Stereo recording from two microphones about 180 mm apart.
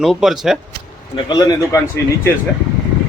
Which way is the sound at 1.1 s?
20° left (ahead or behind).